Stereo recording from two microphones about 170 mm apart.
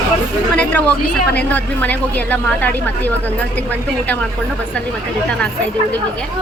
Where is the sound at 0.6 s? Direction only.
10° left (ahead or behind).